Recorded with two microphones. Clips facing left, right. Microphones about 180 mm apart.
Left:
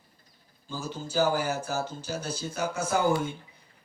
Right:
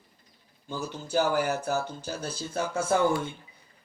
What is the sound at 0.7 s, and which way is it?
Music, 60° right (ahead or behind).